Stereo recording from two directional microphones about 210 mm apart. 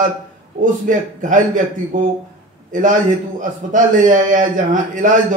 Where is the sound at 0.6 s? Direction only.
35° right (ahead or behind).